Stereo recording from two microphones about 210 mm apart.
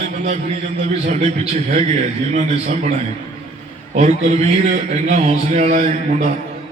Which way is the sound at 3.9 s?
35° right (ahead or behind).